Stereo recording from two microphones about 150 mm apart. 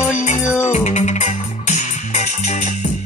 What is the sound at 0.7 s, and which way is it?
Music, 50° left (ahead or behind).